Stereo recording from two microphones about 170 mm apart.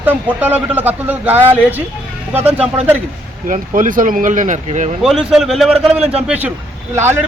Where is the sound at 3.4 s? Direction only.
50° right (ahead or behind).